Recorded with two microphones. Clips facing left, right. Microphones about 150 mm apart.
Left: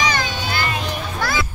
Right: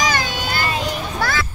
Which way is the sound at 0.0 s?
50° right (ahead or behind).